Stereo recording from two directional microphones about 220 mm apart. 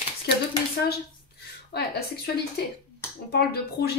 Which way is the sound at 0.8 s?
45° left (ahead or behind).